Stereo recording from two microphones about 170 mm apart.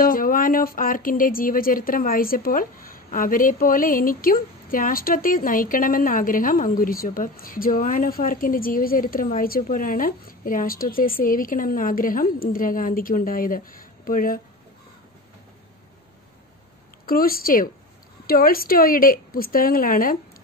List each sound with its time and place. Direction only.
0.0 s a woman's voice: 55° left (ahead or behind)
17.0 s a woman's voice: 60° left (ahead or behind)